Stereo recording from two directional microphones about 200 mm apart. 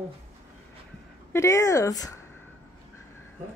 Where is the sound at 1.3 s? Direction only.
15° left (ahead or behind).